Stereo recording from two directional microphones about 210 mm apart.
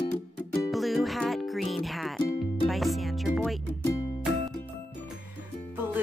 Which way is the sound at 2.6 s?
Centre (ahead or behind).